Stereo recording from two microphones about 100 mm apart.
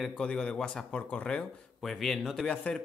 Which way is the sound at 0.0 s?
10° left (ahead or behind).